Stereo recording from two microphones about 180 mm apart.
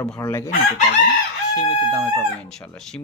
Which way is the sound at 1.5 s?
20° left (ahead or behind).